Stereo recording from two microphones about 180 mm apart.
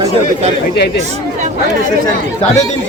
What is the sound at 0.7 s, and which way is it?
Speech, 70° left (ahead or behind).